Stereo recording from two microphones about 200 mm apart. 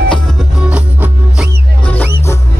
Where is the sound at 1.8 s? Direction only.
10° left (ahead or behind).